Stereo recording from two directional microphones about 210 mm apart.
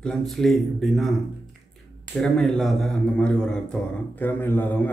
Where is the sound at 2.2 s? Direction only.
Centre (ahead or behind).